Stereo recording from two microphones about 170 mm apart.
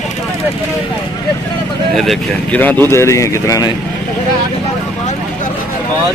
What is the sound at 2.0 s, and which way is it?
Speech, 5° left (ahead or behind).